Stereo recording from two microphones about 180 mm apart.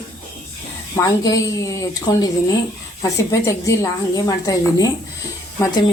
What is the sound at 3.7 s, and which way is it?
A woman's voice, 20° left (ahead or behind).